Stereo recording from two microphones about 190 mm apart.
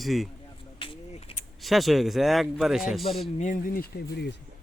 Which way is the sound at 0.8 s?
30° left (ahead or behind).